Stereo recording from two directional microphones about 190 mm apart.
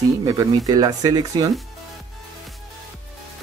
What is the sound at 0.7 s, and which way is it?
Speech, 20° right (ahead or behind).